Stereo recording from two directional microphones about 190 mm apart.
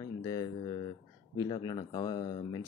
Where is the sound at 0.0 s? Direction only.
20° left (ahead or behind).